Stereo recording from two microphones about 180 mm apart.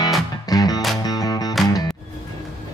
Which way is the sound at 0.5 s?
20° left (ahead or behind).